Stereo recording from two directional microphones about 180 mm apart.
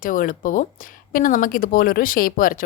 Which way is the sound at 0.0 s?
50° left (ahead or behind).